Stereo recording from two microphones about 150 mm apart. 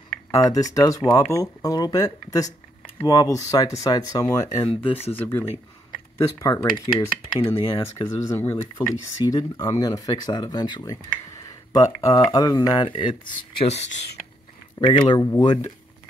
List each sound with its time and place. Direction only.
0.3 s speech: 25° left (ahead or behind)
5.1 s speech: 15° left (ahead or behind); by 13.8 s 40° left (ahead or behind)
14.8 s speech: 30° left (ahead or behind)